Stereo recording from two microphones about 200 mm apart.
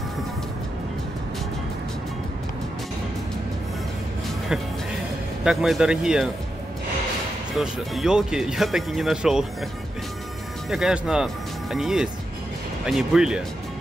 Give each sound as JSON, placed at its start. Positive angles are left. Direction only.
{"t": 5.4, "sound": "speech", "side_deg": -5}
{"t": 7.5, "sound": "speech", "side_deg": 0}
{"t": 10.7, "sound": "speech", "side_deg": 0}